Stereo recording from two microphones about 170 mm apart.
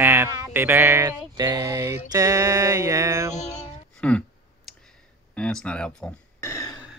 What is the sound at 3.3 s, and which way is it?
Music, 40° left (ahead or behind).